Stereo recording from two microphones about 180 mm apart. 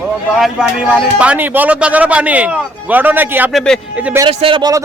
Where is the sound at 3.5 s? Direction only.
Centre (ahead or behind).